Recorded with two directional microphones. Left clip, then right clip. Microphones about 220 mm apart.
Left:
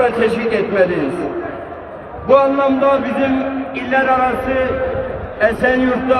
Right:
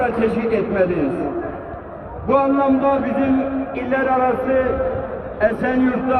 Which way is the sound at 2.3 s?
25° left (ahead or behind).